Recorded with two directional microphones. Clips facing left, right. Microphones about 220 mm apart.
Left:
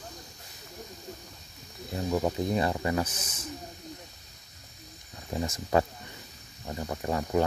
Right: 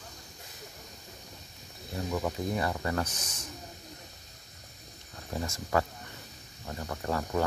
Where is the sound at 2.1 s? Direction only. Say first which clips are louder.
Left 4 dB; 25° left (ahead or behind).